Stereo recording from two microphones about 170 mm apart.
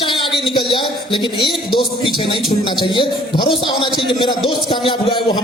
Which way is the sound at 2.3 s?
30° left (ahead or behind).